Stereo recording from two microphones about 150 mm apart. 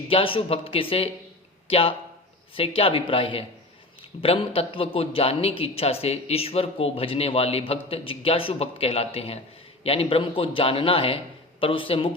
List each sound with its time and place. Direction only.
0.1 s speech: 40° left (ahead or behind)